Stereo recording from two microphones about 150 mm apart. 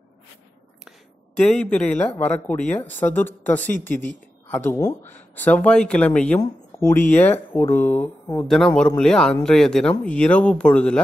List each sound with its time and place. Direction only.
0.8 s speech: 5° left (ahead or behind)